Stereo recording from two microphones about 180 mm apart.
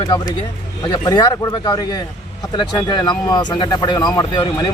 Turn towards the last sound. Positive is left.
turn(degrees=25)  # may be behind; listen again after turning